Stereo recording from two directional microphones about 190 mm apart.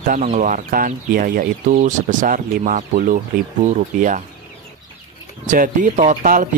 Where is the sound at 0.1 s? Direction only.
45° right (ahead or behind).